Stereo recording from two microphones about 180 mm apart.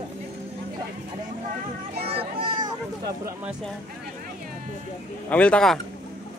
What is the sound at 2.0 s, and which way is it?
Speech, 30° right (ahead or behind).